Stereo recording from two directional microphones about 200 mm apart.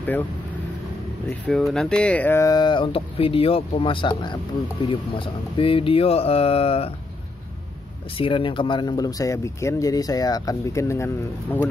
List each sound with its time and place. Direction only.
1.3 s speech: centre (ahead or behind); by 6.9 s 30° left (ahead or behind)
8.2 s speech: 25° left (ahead or behind)